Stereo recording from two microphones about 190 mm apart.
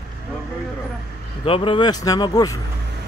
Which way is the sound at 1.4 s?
30° left (ahead or behind).